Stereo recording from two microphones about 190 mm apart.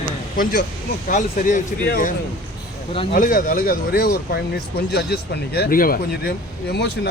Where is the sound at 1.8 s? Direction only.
50° left (ahead or behind).